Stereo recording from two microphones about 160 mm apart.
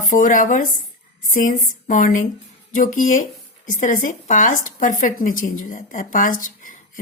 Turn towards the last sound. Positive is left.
turn(degrees=60)  # may be behind; listen again after turning